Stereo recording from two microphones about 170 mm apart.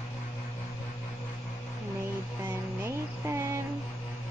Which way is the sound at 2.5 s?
15° right (ahead or behind).